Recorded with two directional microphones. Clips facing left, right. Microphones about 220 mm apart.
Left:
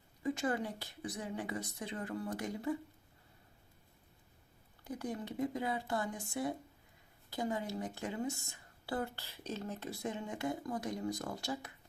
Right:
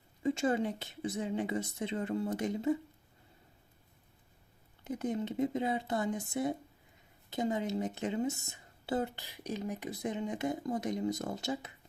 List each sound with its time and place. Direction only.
0.2 s speech: 25° right (ahead or behind)
4.8 s speech: 20° right (ahead or behind)